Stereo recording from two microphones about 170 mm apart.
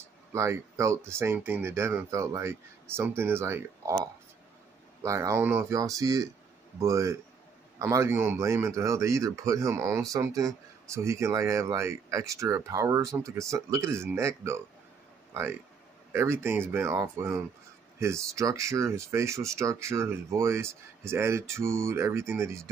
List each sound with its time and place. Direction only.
0.3 s speech: 15° right (ahead or behind)
5.0 s speech: 15° right (ahead or behind)